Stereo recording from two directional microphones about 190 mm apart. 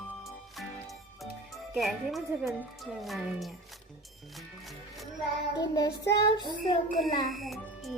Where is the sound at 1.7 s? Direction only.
Centre (ahead or behind).